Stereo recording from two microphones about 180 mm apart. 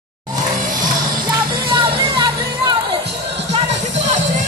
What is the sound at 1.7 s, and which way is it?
Music, 25° right (ahead or behind).